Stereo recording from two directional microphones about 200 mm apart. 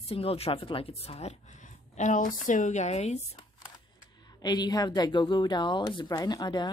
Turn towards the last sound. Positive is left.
turn(degrees=20)  # may be behind; listen again after turning